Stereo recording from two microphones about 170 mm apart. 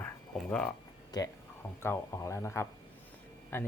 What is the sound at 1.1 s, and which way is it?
Speech, 25° left (ahead or behind).